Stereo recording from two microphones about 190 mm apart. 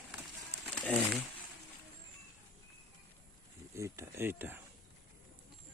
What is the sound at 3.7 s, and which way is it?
Speech, 15° right (ahead or behind).